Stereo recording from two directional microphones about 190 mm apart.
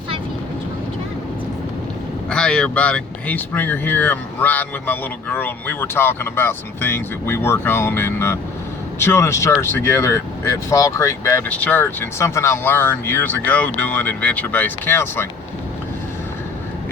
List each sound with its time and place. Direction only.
2.3 s speech: 5° left (ahead or behind)